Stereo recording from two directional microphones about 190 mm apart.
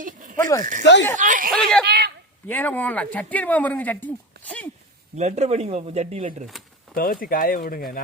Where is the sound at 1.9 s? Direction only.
60° right (ahead or behind).